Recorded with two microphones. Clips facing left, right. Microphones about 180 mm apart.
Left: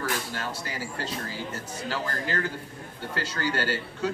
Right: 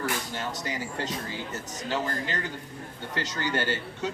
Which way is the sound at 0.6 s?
20° right (ahead or behind).